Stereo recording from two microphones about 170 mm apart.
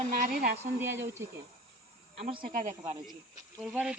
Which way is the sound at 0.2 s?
60° right (ahead or behind).